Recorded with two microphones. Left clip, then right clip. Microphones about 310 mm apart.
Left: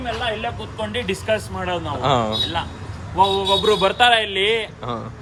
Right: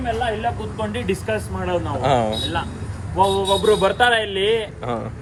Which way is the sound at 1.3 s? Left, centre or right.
Left.